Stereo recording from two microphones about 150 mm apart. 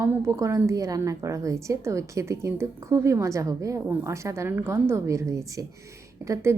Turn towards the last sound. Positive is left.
turn(degrees=-20)  # may be behind; listen again after turning